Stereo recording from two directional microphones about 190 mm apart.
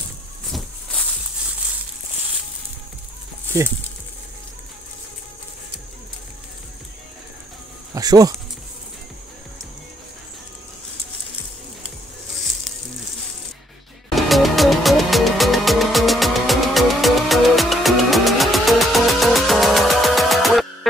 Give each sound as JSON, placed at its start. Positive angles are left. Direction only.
{"t": 0.5, "sound": "a sound", "side_deg": 0}
{"t": 7.9, "sound": "speech", "side_deg": -20}
{"t": 14.1, "sound": "music", "side_deg": 0}